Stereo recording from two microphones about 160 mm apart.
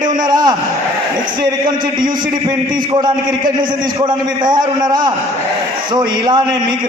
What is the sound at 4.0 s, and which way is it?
A man's voice, 30° right (ahead or behind).